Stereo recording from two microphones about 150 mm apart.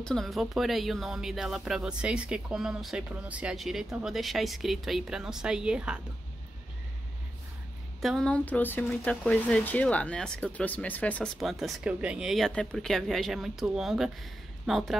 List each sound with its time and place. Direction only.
0.0 s speech: centre (ahead or behind)
8.0 s speech: centre (ahead or behind)
11.3 s speech: centre (ahead or behind)